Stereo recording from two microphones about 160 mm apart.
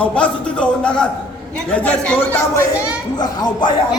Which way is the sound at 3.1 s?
25° left (ahead or behind).